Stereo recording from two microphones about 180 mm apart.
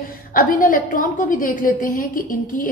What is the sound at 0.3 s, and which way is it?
A woman's voice, 50° left (ahead or behind).